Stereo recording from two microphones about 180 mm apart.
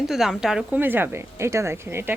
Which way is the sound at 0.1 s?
Centre (ahead or behind).